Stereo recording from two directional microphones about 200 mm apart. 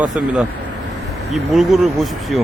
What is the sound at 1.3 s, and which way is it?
Speech, centre (ahead or behind).